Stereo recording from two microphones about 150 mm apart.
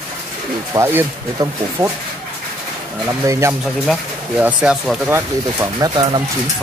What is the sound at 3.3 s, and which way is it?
Speech, 20° right (ahead or behind).